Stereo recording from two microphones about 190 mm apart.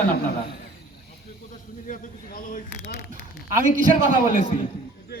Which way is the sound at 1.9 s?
45° left (ahead or behind).